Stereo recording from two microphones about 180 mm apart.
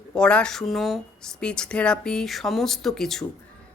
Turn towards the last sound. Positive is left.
turn(degrees=0)  # may be behind; listen again after turning